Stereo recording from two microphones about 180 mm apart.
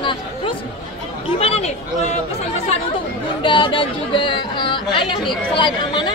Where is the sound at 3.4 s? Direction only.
25° left (ahead or behind).